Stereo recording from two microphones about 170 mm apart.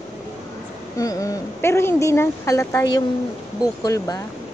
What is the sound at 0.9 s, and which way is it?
A woman's voice, 20° left (ahead or behind).